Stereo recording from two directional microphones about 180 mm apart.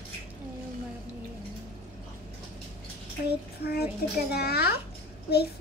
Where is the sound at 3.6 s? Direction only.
60° left (ahead or behind).